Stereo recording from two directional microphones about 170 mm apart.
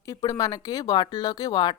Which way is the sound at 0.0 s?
20° left (ahead or behind).